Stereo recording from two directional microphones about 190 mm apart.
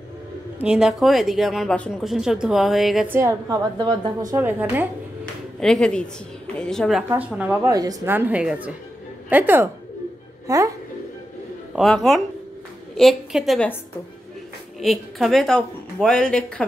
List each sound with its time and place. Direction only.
0.6 s speech: 5° right (ahead or behind)
3.2 s a woman's voice: 15° right (ahead or behind)
5.2 s a woman's voice: 5° left (ahead or behind)
7.7 s a woman's voice: 20° right (ahead or behind)
11.7 s speech: centre (ahead or behind)
14.8 s speech: centre (ahead or behind)